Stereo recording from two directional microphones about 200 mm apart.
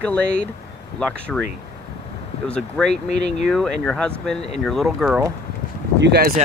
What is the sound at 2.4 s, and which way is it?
Speech, 5° left (ahead or behind).